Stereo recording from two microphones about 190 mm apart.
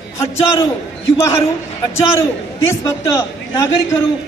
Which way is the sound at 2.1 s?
15° left (ahead or behind).